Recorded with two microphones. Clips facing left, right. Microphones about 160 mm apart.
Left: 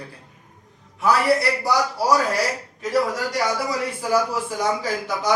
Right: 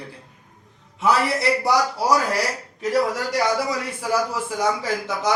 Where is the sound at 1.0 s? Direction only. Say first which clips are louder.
Left 2 dB; 25° right (ahead or behind).